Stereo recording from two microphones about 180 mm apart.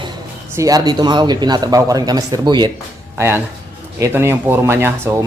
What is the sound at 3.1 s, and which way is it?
Speech, 15° right (ahead or behind).